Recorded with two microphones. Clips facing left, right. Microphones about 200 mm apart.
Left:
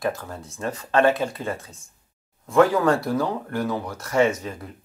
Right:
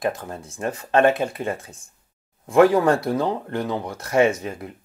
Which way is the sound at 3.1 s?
20° right (ahead or behind).